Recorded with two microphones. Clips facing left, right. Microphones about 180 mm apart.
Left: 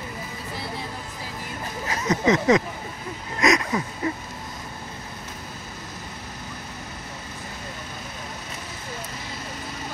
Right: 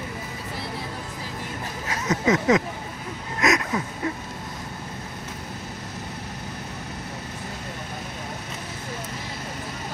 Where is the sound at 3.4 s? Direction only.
5° right (ahead or behind).